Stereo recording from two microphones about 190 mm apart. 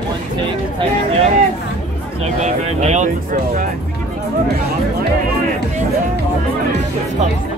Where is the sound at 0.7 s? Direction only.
30° right (ahead or behind).